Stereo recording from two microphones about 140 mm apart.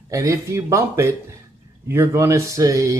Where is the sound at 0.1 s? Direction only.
25° right (ahead or behind).